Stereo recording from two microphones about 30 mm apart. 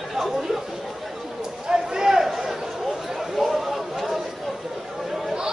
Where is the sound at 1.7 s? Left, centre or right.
Right.